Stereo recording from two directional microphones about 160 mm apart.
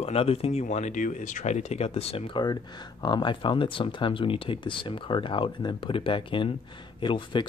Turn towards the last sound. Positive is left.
turn(degrees=30)  # may be behind; listen again after turning